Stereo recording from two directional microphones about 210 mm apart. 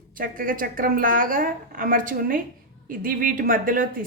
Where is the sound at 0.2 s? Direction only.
40° right (ahead or behind).